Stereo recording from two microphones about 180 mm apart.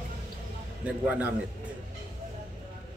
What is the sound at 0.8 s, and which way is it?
Speech, 10° right (ahead or behind).